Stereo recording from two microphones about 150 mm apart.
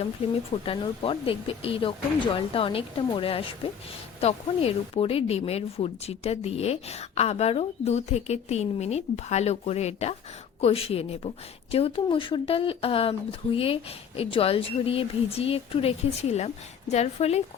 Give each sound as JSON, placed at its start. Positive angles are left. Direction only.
{"t": 0.2, "sound": "speech", "side_deg": 40}